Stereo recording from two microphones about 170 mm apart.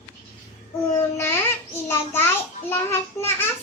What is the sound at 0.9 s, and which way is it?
Child singing, 15° left (ahead or behind).